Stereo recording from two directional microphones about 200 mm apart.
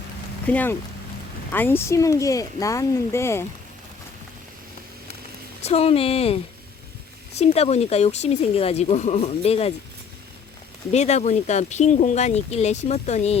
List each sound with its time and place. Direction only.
0.4 s speech: 10° left (ahead or behind)
5.6 s speech: 30° left (ahead or behind)
10.9 s speech: 35° left (ahead or behind)